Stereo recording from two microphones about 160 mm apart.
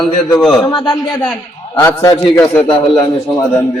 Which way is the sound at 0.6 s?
30° left (ahead or behind).